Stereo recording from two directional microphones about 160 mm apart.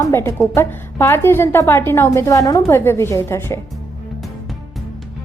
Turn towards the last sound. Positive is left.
turn(degrees=15)  # may be behind; listen again after turning